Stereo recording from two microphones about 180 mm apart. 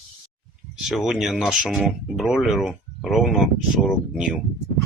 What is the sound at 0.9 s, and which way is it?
Speech, centre (ahead or behind).